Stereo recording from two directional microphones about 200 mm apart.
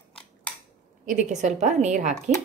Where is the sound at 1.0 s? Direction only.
40° right (ahead or behind).